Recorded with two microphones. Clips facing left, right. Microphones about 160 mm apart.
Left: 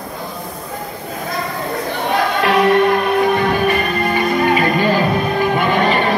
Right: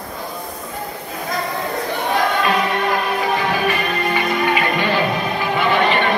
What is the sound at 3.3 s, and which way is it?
Music, 50° left (ahead or behind).